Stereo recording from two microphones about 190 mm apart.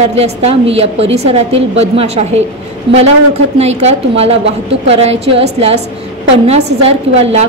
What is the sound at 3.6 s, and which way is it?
A woman's voice, 35° right (ahead or behind).